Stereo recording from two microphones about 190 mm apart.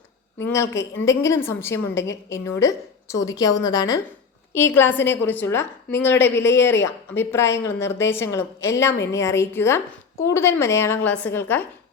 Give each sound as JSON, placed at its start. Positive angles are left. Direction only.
{"t": 0.4, "sound": "a woman's voice", "side_deg": 15}